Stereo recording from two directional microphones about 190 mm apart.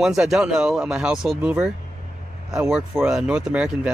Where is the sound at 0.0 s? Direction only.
5° right (ahead or behind).